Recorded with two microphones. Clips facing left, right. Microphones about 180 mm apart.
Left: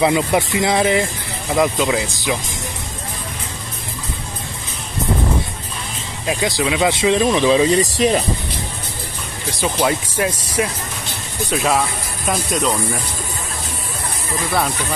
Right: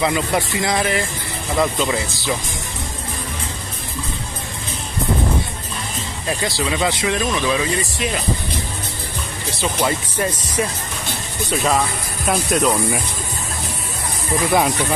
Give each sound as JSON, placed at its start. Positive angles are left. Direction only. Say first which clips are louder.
{"t": 0.0, "sound": "speech", "louder": "left 3 dB", "side_deg": 20}
{"t": 6.2, "sound": "speech", "louder": "left 3 dB", "side_deg": 15}
{"t": 6.9, "sound": "speech", "louder": "left 5 dB", "side_deg": 25}
{"t": 7.8, "sound": "speech", "louder": "left 8 dB", "side_deg": 40}
{"t": 9.6, "sound": "speech", "louder": "left 2 dB", "side_deg": 10}